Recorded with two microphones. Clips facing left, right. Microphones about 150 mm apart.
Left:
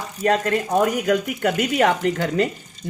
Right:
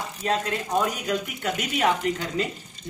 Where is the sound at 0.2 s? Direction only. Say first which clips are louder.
Left 7 dB; 60° left (ahead or behind).